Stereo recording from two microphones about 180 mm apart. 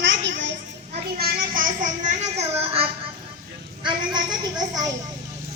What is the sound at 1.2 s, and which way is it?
Music, 50° right (ahead or behind).